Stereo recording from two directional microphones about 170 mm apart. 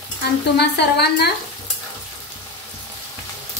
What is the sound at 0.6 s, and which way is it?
Speech, 75° left (ahead or behind).